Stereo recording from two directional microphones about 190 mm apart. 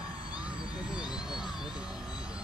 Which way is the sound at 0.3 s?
5° right (ahead or behind).